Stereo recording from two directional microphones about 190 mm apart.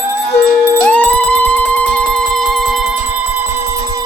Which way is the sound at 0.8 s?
5° left (ahead or behind).